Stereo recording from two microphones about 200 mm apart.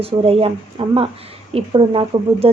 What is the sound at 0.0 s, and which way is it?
A woman's voice, 30° right (ahead or behind).